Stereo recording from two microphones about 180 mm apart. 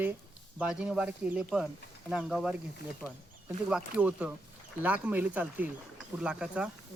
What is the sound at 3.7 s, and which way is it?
Speech, 5° right (ahead or behind).